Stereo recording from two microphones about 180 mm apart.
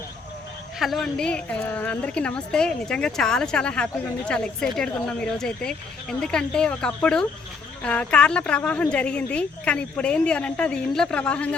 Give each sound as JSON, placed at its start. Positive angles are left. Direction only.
{"t": 0.8, "sound": "a woman's voice", "side_deg": 0}